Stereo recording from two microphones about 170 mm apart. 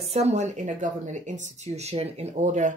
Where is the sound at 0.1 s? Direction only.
40° right (ahead or behind).